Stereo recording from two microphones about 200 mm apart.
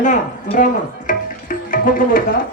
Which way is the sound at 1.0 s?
45° left (ahead or behind).